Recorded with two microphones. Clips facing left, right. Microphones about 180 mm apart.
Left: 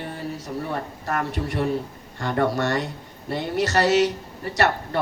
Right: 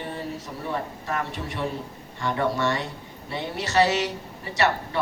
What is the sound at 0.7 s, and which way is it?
Speech, 45° left (ahead or behind).